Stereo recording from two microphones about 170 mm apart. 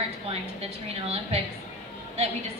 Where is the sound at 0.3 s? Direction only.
35° right (ahead or behind).